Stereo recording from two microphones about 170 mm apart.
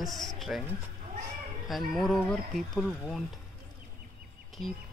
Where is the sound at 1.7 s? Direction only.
Centre (ahead or behind).